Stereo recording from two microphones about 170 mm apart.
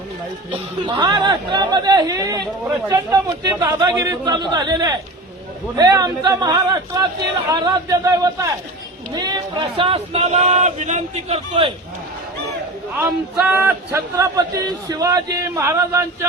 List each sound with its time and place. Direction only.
0.5 s speech: 30° right (ahead or behind)
13.3 s speech: centre (ahead or behind)
14.2 s speech: 20° right (ahead or behind)